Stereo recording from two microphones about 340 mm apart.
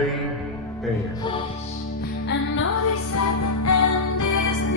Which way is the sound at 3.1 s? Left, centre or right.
Left.